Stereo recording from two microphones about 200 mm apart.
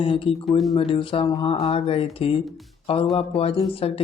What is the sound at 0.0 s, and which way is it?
Speech, 25° left (ahead or behind).